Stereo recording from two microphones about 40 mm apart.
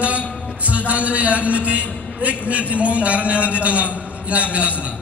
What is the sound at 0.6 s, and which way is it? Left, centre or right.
A man's voice, right.